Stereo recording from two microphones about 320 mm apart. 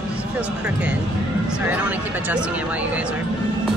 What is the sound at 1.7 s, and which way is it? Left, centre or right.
Speech, centre.